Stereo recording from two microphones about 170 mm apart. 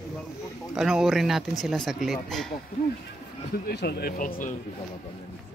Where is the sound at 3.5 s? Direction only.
75° left (ahead or behind); by 4.5 s 55° left (ahead or behind).